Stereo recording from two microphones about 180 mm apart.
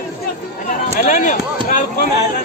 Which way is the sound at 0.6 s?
45° left (ahead or behind).